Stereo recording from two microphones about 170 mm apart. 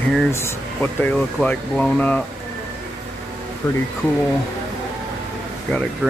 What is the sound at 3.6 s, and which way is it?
Speech, 10° left (ahead or behind).